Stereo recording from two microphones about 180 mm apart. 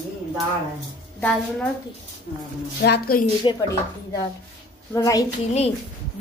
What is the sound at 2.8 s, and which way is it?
Speech, 55° left (ahead or behind).